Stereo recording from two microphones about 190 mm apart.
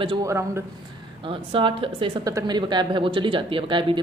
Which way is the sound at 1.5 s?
25° right (ahead or behind).